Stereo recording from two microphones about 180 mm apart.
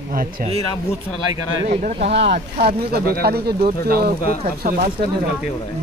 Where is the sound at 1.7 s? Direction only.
40° right (ahead or behind).